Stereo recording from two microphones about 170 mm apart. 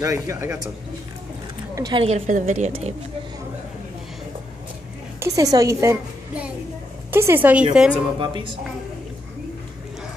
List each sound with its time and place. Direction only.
0.0 s a woman's voice: 20° right (ahead or behind)
1.8 s a woman's voice: 25° right (ahead or behind)
2.0 s a woman's voice: 45° right (ahead or behind)
5.2 s a woman's voice: 20° right (ahead or behind)
7.1 s a woman's voice: 15° right (ahead or behind)
8.2 s a woman's voice: 30° right (ahead or behind)